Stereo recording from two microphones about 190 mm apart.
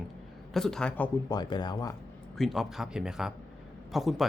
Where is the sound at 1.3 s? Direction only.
20° left (ahead or behind).